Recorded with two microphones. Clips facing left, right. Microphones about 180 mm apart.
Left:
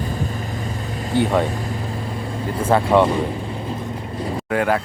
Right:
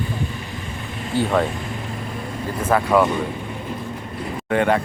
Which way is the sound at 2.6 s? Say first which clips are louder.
Left 2 dB; 30° left (ahead or behind).